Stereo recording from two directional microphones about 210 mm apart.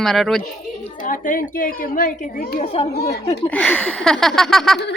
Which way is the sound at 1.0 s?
40° left (ahead or behind).